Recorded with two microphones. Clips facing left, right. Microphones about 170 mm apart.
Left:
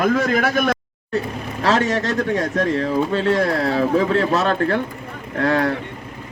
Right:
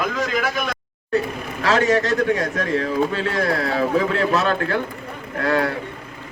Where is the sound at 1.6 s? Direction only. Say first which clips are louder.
Right 1 dB; 35° left (ahead or behind).